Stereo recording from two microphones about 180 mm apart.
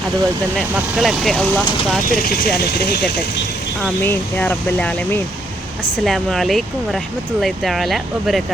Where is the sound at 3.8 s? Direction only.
10° left (ahead or behind).